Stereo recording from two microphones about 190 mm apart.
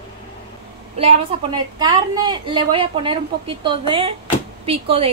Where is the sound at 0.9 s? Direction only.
30° right (ahead or behind).